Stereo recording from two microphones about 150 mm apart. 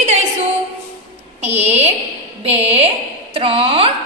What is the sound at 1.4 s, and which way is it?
A woman's voice, 45° right (ahead or behind).